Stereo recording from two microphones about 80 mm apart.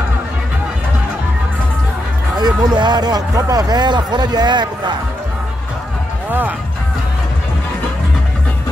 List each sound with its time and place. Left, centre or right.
2.3 s speech: right